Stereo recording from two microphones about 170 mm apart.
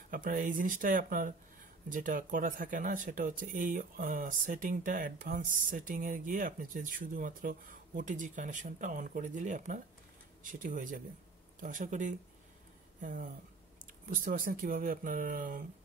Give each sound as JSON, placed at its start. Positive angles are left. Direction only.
{"t": 0.1, "sound": "speech", "side_deg": -50}